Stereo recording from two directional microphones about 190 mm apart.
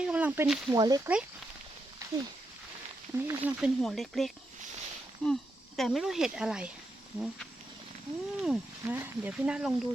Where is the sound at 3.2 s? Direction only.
5° right (ahead or behind).